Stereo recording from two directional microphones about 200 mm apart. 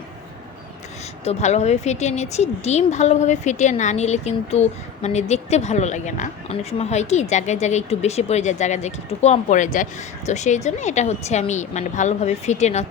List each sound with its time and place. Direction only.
1.2 s speech: 35° left (ahead or behind)